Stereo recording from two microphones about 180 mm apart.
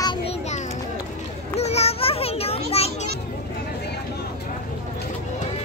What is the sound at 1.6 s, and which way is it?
Children playing, 35° left (ahead or behind).